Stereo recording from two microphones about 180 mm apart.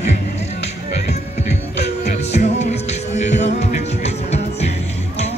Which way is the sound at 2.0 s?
40° left (ahead or behind).